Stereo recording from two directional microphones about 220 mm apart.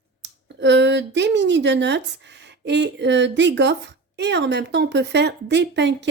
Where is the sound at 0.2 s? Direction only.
55° right (ahead or behind).